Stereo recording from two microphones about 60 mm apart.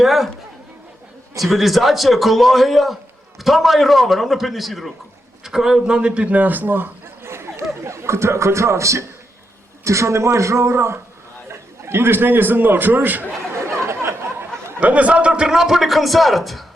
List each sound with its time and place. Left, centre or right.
0.0 s a man's voice: centre
1.4 s a man's voice: centre; by 13.2 s right
13.6 s a sound: right
14.8 s a man's voice: right; by 16.6 s centre